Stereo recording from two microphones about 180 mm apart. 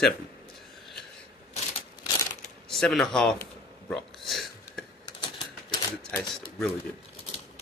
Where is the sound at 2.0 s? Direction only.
20° left (ahead or behind).